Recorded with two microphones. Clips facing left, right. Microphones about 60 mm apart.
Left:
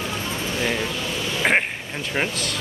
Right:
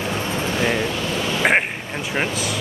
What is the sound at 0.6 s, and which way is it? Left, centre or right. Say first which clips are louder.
Speech: right 3 dB; centre.